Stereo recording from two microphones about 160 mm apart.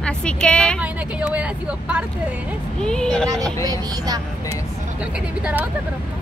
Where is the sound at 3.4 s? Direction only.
25° right (ahead or behind).